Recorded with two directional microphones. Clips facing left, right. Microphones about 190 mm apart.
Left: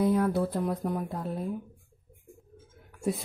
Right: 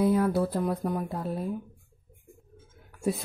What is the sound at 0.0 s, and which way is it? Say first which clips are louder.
Speech: right 1 dB; 5° right (ahead or behind).